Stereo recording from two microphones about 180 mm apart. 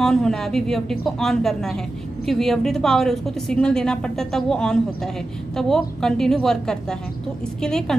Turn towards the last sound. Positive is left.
turn(degrees=5)  # may be behind; listen again after turning